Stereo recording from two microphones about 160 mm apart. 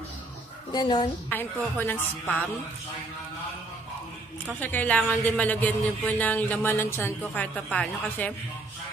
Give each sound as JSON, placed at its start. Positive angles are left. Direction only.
{"t": 0.7, "sound": "a woman's voice", "side_deg": 25}
{"t": 1.3, "sound": "speech", "side_deg": 10}
{"t": 4.6, "sound": "speech", "side_deg": 10}